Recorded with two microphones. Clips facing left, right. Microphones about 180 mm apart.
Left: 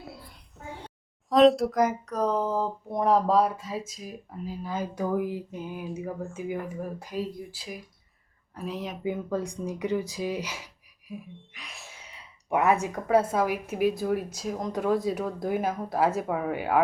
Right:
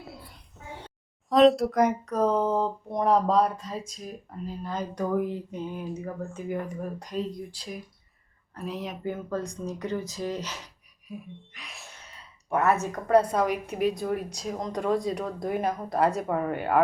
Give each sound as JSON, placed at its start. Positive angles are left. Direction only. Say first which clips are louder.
{"t": 1.3, "sound": "speech", "louder": "even", "side_deg": 0}
{"t": 9.0, "sound": "speech", "louder": "left 2 dB", "side_deg": 15}
{"t": 12.0, "sound": "speech", "louder": "left 3 dB", "side_deg": 15}